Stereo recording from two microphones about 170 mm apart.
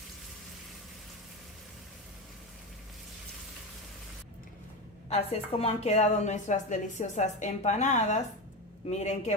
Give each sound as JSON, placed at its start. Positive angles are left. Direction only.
{"t": 5.0, "sound": "a woman's voice", "side_deg": 35}